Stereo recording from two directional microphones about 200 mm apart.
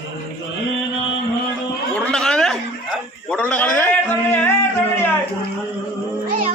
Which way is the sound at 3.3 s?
5° left (ahead or behind).